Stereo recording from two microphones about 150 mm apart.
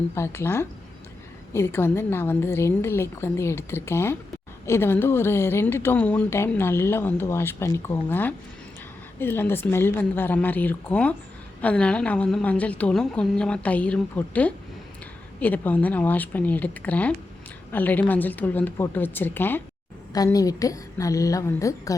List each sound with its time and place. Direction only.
0.1 s a woman's voice: 15° left (ahead or behind)